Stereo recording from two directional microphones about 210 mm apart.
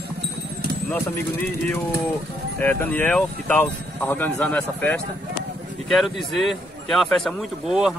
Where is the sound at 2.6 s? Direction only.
10° left (ahead or behind).